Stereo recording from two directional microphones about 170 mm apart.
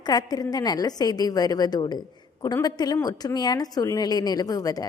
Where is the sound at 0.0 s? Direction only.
25° left (ahead or behind).